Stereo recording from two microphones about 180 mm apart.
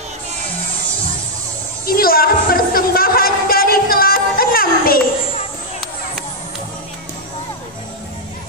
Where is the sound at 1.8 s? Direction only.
55° left (ahead or behind).